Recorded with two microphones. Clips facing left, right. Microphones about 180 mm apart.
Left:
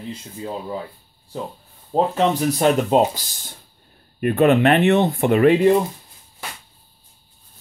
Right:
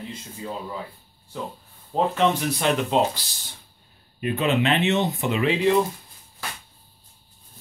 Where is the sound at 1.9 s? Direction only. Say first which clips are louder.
Left 3 dB; 35° left (ahead or behind).